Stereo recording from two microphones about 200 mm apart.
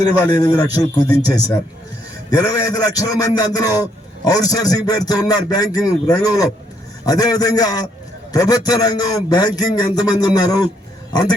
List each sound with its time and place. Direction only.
0.0 s a man's voice: 20° left (ahead or behind)